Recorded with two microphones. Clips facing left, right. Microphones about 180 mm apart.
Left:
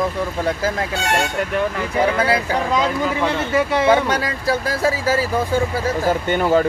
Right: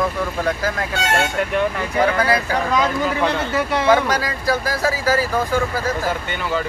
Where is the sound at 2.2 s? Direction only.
25° left (ahead or behind).